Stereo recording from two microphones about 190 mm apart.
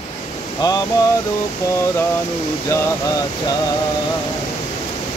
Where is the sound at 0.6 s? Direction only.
20° left (ahead or behind).